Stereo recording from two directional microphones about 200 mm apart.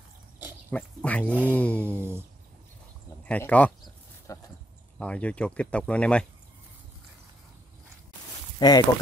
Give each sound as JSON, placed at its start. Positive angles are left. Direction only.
{"t": 0.7, "sound": "speech", "side_deg": 5}
{"t": 2.0, "sound": "a sound", "side_deg": -10}
{"t": 3.3, "sound": "speech", "side_deg": 5}
{"t": 4.3, "sound": "a sound", "side_deg": 15}
{"t": 4.9, "sound": "speech", "side_deg": 5}
{"t": 8.5, "sound": "speech", "side_deg": 20}